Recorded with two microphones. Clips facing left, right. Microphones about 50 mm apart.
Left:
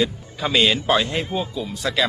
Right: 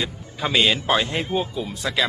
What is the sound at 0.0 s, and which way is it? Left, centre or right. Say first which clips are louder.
Speech: left 4 dB; centre.